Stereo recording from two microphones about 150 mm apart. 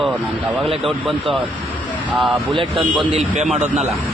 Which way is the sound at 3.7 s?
Centre (ahead or behind).